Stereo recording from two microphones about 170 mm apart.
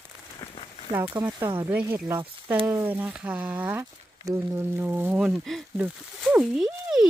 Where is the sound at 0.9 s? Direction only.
20° right (ahead or behind).